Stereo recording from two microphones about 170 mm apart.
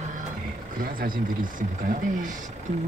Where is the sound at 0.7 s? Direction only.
55° right (ahead or behind).